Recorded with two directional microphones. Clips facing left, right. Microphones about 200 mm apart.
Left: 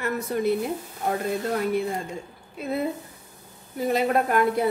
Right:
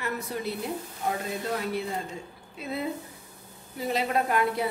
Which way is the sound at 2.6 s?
50° left (ahead or behind).